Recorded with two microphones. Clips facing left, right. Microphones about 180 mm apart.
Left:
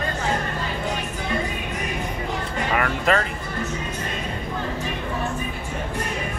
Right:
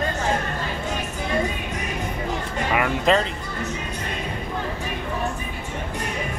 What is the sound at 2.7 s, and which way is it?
Music, 15° right (ahead or behind).